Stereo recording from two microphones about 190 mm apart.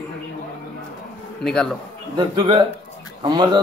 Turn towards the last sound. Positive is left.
turn(degrees=-25)  # may be behind; listen again after turning